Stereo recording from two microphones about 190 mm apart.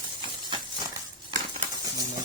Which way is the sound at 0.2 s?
25° right (ahead or behind).